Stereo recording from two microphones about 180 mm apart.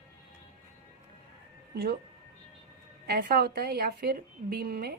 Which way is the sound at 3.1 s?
55° right (ahead or behind).